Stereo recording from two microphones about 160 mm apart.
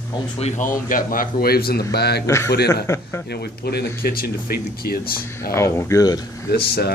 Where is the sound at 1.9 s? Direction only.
90° left.